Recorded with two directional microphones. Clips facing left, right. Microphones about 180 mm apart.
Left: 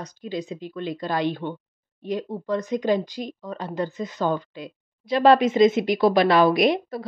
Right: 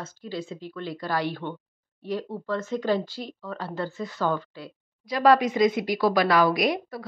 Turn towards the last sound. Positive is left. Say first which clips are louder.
# left 5 dB
turn(degrees=25)  # may be behind; listen again after turning